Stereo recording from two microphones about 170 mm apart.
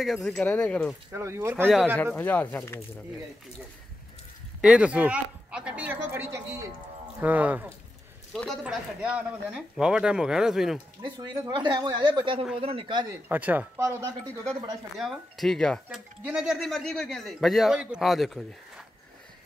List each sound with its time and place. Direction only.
0.0 s a man's voice: centre (ahead or behind)
1.1 s a woman's voice: 15° right (ahead or behind)
2.1 s speech: 10° left (ahead or behind)
4.6 s a woman's voice: 5° right (ahead or behind)
8.3 s a man's voice: 5° left (ahead or behind)
11.0 s speech: 25° right (ahead or behind)
13.3 s a woman's voice: 10° right (ahead or behind)
15.0 s a man's voice: centre (ahead or behind)